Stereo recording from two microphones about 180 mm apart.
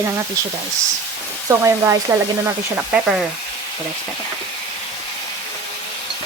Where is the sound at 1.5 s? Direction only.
20° right (ahead or behind).